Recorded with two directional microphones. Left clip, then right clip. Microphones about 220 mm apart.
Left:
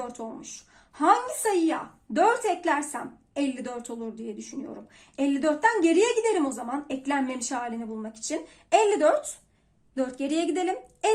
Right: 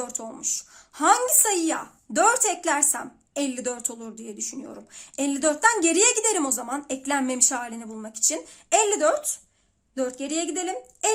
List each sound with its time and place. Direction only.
0.1 s a woman's voice: 30° right (ahead or behind); by 11.1 s 15° right (ahead or behind)